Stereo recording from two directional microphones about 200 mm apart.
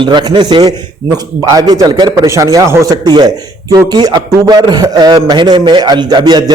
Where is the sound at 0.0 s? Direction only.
25° right (ahead or behind).